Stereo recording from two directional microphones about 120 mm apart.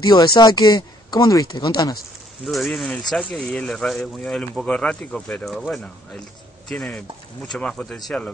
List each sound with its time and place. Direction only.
0.1 s speech: 40° left (ahead or behind)
2.4 s speech: centre (ahead or behind)